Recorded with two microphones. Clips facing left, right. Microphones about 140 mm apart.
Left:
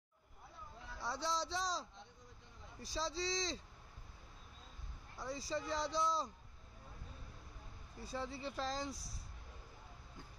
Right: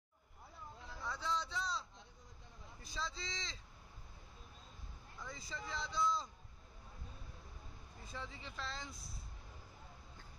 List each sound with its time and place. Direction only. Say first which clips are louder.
1.0 s a sound: left 1 dB; 35° left (ahead or behind)
2.8 s a man's voice: left 6 dB; 35° left (ahead or behind)
5.1 s a man's voice: left 8 dB; 35° left (ahead or behind)
8.0 s a man's voice: left 7 dB; 35° left (ahead or behind)